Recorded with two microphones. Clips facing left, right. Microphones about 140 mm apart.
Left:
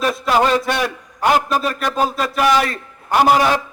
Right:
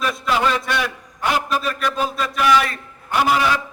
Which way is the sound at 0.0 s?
40° left (ahead or behind).